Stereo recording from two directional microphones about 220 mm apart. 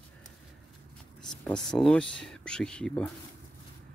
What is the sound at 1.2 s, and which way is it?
Speech, 5° left (ahead or behind).